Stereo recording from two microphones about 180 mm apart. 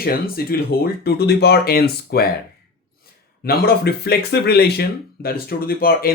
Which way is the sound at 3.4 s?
60° left (ahead or behind).